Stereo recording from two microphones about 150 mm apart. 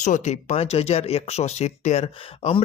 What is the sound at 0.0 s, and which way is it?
Speech, 55° left (ahead or behind).